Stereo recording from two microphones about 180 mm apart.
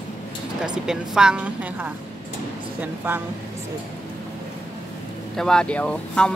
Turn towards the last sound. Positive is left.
turn(degrees=5)  # may be behind; listen again after turning